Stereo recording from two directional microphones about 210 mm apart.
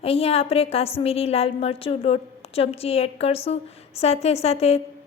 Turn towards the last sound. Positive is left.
turn(degrees=30)  # may be behind; listen again after turning